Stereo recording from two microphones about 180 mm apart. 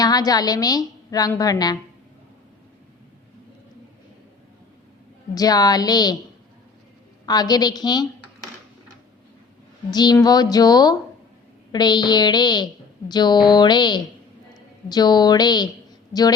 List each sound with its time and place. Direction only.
0.0 s a woman's voice: 20° left (ahead or behind)
5.3 s a woman's voice: 20° left (ahead or behind)
7.3 s a woman's voice: 20° left (ahead or behind)
9.9 s a woman's voice: 25° left (ahead or behind)